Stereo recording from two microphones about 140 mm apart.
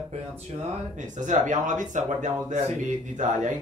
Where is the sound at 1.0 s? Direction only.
60° right (ahead or behind).